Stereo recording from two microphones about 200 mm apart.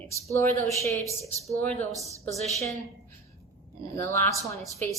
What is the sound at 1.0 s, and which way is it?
Speech, 15° right (ahead or behind).